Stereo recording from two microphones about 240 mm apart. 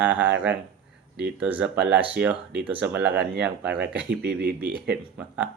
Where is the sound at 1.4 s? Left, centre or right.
Centre.